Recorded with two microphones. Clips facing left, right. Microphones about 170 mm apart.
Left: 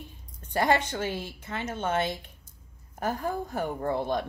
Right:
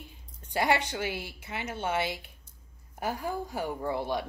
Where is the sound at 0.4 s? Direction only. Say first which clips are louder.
Left 2 dB; 15° right (ahead or behind).